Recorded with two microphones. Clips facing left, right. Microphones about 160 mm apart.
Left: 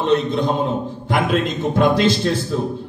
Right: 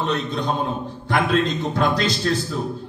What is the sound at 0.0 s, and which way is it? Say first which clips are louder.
A man's voice: left 6 dB; 20° left (ahead or behind).